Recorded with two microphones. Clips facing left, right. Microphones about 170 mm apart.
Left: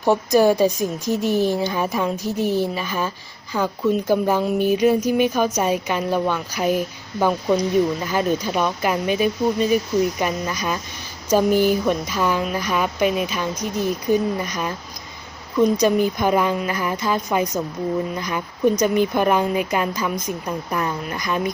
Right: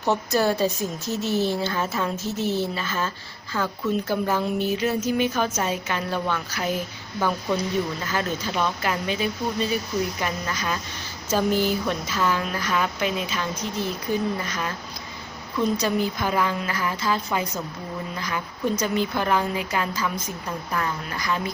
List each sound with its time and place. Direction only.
0.0 s a woman's voice: 15° left (ahead or behind)